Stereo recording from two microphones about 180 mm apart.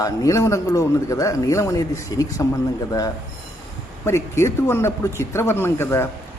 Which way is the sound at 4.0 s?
15° left (ahead or behind).